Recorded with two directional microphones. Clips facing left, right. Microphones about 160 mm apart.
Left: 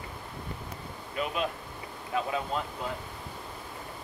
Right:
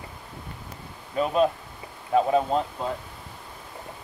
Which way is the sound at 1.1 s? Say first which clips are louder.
Right 9 dB; 35° right (ahead or behind).